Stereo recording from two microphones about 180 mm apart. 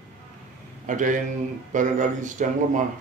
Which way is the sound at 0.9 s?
45° right (ahead or behind).